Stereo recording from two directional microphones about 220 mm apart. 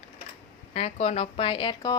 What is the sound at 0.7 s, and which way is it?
A woman's voice, 30° left (ahead or behind).